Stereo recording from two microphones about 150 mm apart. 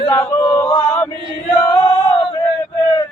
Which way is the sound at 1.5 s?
10° left (ahead or behind).